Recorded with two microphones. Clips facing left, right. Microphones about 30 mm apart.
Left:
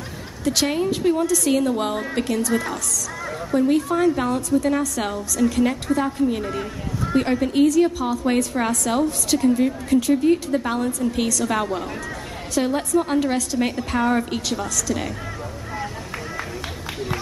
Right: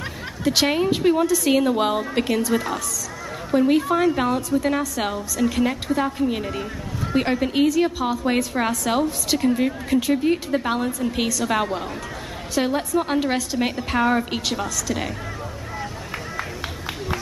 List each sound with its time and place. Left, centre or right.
0.4 s a woman's voice: centre
6.5 s speech: centre
7.2 s a woman's voice: centre